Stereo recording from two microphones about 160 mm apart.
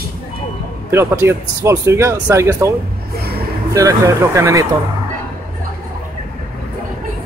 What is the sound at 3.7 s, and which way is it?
Speech, 20° right (ahead or behind).